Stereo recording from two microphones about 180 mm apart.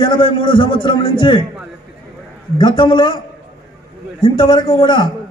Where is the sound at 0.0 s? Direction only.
25° left (ahead or behind).